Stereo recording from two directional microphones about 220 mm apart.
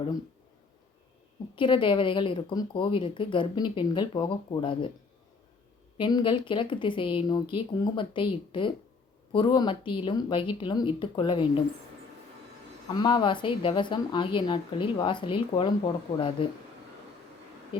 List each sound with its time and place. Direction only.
1.5 s speech: 20° left (ahead or behind)
6.0 s speech: 20° left (ahead or behind)
12.9 s speech: 20° left (ahead or behind)